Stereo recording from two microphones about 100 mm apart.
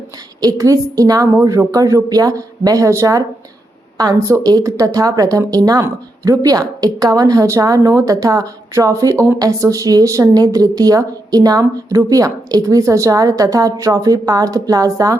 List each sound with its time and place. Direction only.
0.4 s speech: 35° right (ahead or behind)
4.4 s speech: 40° right (ahead or behind)